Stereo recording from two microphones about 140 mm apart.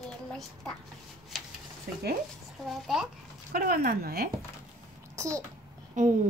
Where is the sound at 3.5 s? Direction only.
90° right.